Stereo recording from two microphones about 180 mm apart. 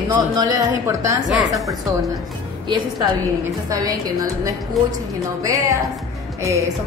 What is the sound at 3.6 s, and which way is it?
A woman's voice, 20° right (ahead or behind).